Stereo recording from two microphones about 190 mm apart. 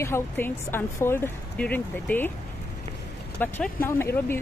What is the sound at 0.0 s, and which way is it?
Speech, 10° left (ahead or behind).